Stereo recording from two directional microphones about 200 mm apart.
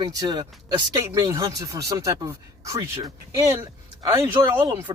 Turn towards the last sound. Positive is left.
turn(degrees=-20)  # may be behind; listen again after turning